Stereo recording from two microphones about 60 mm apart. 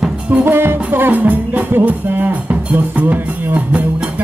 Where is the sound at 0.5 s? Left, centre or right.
Right.